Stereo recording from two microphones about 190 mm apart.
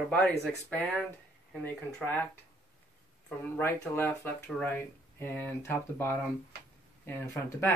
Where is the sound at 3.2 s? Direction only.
10° left (ahead or behind).